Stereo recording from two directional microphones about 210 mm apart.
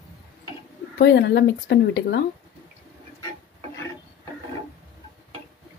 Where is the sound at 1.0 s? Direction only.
55° left (ahead or behind).